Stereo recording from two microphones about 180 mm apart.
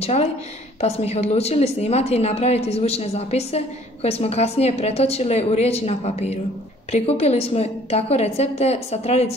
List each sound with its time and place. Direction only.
0.0 s speech: 35° left (ahead or behind)